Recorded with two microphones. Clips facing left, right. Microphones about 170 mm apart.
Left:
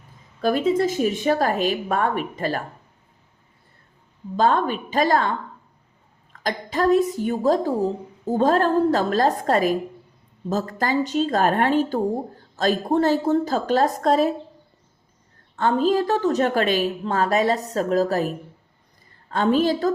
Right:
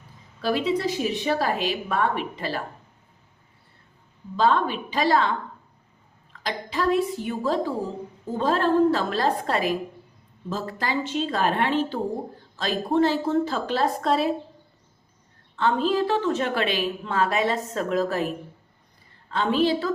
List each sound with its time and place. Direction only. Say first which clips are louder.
0.4 s speech: left 4 dB; 45° left (ahead or behind)
4.4 s speech: left 2 dB; 45° left (ahead or behind)
6.3 s speech: left 3 dB; 45° left (ahead or behind)
15.5 s a woman's voice: left 3 dB; 45° left (ahead or behind)